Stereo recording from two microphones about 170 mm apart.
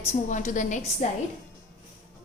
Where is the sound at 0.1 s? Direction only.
45° left (ahead or behind).